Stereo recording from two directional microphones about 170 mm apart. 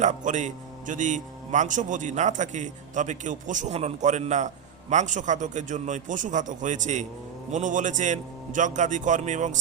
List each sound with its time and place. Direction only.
0.0 s a man's voice: 45° right (ahead or behind)